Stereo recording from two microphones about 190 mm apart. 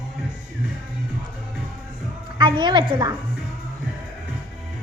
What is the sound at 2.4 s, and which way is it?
Speech, 25° right (ahead or behind).